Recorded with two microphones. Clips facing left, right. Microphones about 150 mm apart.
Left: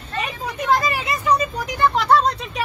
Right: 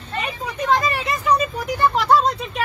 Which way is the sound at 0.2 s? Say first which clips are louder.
Even; 5° left (ahead or behind).